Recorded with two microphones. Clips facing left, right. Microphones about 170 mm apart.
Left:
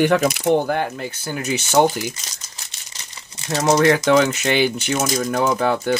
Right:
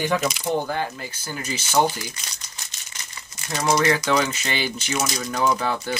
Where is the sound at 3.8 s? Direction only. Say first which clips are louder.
Left 6 dB; 55° left (ahead or behind).